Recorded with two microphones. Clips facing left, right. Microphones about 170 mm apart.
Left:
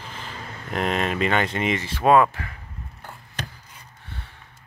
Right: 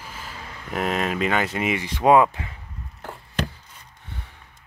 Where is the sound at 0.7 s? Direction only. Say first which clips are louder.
Even; 5° right (ahead or behind).